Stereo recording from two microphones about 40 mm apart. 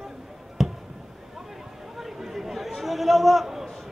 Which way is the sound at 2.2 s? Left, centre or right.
Centre.